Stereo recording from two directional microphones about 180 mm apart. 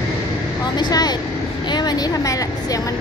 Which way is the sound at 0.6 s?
25° left (ahead or behind).